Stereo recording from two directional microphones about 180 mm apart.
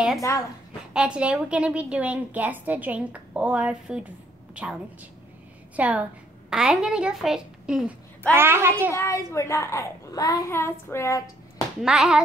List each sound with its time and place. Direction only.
0.2 s a woman's voice: 20° left (ahead or behind)
0.9 s a woman's voice: 5° right (ahead or behind)
5.8 s a woman's voice: 10° right (ahead or behind)
8.9 s a child's voice: 15° left (ahead or behind)
11.8 s a woman's voice: 5° right (ahead or behind)